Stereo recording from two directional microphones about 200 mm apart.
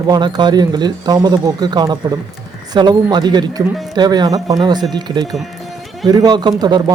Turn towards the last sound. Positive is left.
turn(degrees=-20)  # may be behind; listen again after turning